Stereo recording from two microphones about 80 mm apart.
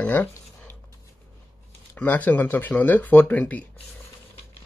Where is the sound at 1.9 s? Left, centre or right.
Left.